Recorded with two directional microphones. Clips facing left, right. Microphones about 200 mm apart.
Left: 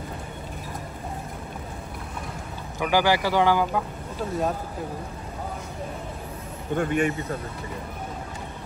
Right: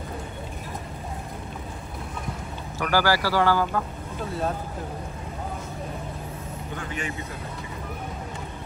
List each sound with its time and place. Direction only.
2.8 s speech: 15° left (ahead or behind)
6.7 s speech: 55° left (ahead or behind)